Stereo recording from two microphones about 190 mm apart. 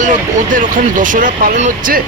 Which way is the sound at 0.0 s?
40° right (ahead or behind).